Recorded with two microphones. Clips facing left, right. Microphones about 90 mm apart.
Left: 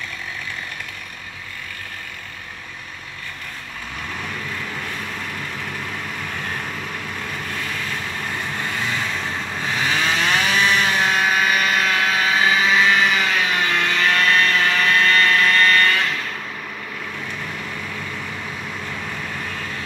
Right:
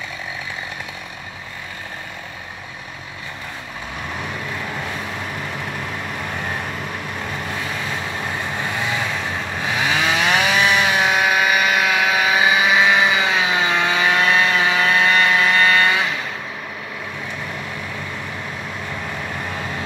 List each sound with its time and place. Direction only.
4.7 s vehicle: 15° right (ahead or behind)
6.2 s vehicle: 10° right (ahead or behind)